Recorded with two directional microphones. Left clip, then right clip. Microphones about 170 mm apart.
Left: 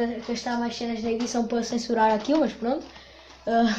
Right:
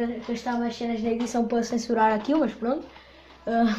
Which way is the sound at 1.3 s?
25° right (ahead or behind).